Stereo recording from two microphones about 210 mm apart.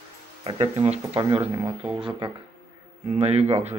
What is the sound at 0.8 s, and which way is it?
Speech, 25° right (ahead or behind).